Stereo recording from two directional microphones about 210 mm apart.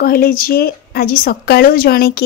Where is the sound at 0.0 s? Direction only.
45° left (ahead or behind).